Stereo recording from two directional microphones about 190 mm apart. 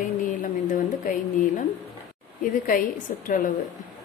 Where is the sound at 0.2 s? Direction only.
45° left (ahead or behind).